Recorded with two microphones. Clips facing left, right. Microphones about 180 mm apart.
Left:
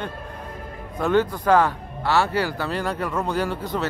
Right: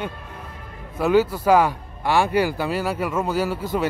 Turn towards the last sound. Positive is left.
turn(degrees=-10)  # may be behind; listen again after turning